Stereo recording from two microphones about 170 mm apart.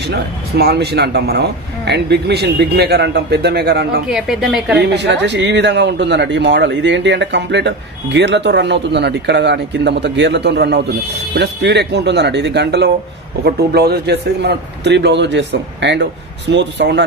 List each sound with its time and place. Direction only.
0.0 s a man's voice: 75° right (ahead or behind)
4.1 s a woman's voice: centre (ahead or behind)
4.9 s a man's voice: 90° right
13.4 s a man's voice: 65° right (ahead or behind); by 17.0 s 90° right